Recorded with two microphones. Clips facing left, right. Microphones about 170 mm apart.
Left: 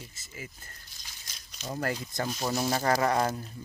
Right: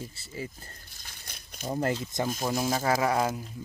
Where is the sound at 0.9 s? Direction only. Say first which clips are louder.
Right 3 dB; 55° right (ahead or behind).